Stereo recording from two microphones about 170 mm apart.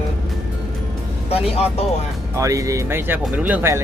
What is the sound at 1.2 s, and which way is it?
Speech, 35° left (ahead or behind).